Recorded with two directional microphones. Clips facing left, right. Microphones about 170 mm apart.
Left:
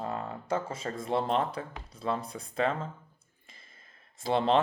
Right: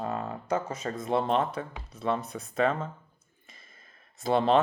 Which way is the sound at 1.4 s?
25° right (ahead or behind).